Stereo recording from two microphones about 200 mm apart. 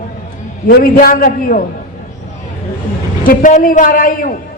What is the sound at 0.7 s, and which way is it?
Speech, 45° left (ahead or behind).